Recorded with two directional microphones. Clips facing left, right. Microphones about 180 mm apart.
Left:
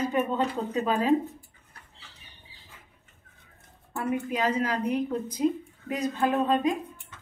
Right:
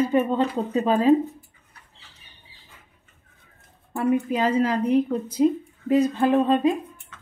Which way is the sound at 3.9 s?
30° right (ahead or behind).